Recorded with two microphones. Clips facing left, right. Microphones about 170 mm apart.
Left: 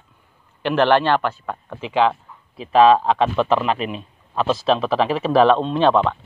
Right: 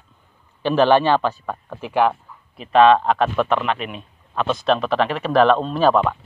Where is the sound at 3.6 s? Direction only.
35° left (ahead or behind).